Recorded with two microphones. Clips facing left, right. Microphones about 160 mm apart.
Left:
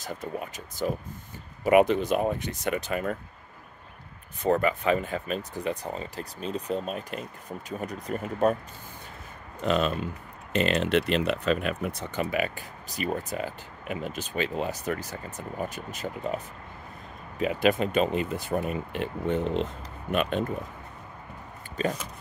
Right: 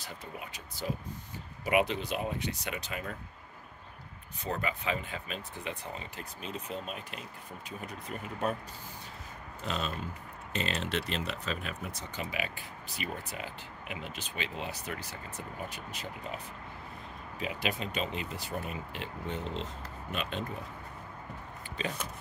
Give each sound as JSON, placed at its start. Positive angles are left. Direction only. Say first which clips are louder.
{"t": 0.0, "sound": "speech", "louder": "left 9 dB", "side_deg": 45}
{"t": 4.4, "sound": "speech", "louder": "left 11 dB", "side_deg": 55}
{"t": 9.7, "sound": "speech", "louder": "left 10 dB", "side_deg": 70}
{"t": 17.4, "sound": "speech", "louder": "left 11 dB", "side_deg": 50}
{"t": 21.8, "sound": "speech", "louder": "left 8 dB", "side_deg": 45}